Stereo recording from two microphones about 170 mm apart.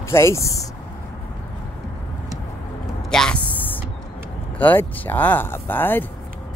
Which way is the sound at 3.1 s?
5° left (ahead or behind).